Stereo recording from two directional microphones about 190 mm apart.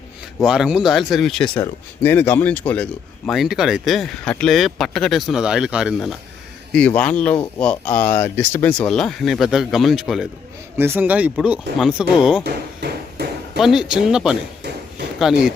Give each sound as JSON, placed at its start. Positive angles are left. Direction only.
{"t": 0.3, "sound": "speech", "side_deg": 0}
{"t": 12.8, "sound": "a sound", "side_deg": -60}
{"t": 13.6, "sound": "speech", "side_deg": 0}